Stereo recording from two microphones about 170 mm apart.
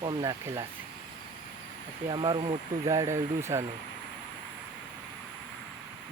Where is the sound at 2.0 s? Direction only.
30° right (ahead or behind).